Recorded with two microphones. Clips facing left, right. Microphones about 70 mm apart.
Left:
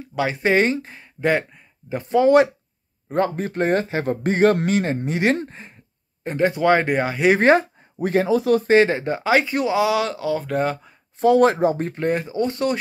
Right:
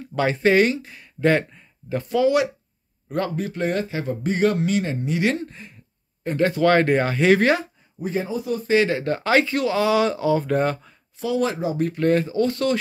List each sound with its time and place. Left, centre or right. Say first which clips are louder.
0.1 s speech: right 1 dB; centre
0.4 s speech: right 1 dB; left
0.7 s a man's voice: left 4 dB; left
1.2 s speech: right 1 dB; centre
2.0 s a man's voice: left 5 dB; left
6.2 s speech: left 1 dB; left
7.3 s a man's voice: left 4 dB; left
8.0 s speech: left 7 dB; left
8.6 s a man's voice: left 2 dB; left
8.9 s speech: even; centre
9.8 s speech: right 2 dB; centre
11.1 s speech: left 8 dB; left
12.0 s speech: right 4 dB; centre